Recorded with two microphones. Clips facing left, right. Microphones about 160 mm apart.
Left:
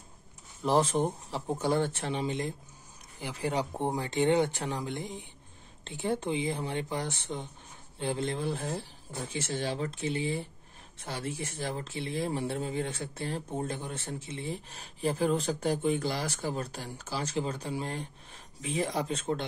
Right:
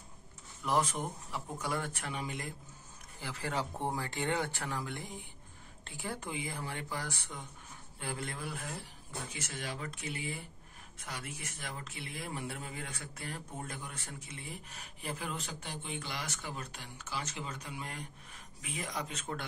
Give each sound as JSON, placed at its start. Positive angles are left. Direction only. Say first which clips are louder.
{"t": 0.6, "sound": "speech", "louder": "left 7 dB", "side_deg": 30}